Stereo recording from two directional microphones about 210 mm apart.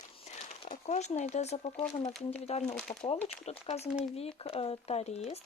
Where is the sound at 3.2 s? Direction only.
5° left (ahead or behind).